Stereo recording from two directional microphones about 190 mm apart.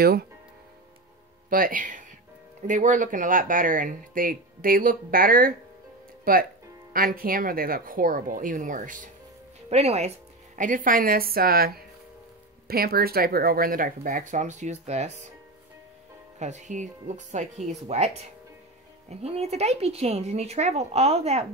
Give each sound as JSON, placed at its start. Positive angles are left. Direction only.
{"t": 1.5, "sound": "a woman's voice", "side_deg": -45}
{"t": 16.3, "sound": "speech", "side_deg": -40}